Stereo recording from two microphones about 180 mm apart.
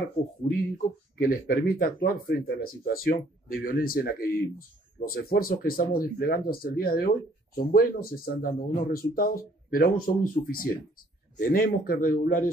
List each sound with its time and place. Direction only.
1.1 s speech: 55° left (ahead or behind)